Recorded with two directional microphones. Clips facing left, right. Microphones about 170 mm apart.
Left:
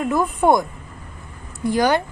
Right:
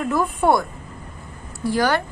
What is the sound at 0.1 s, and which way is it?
A woman's voice, 15° left (ahead or behind).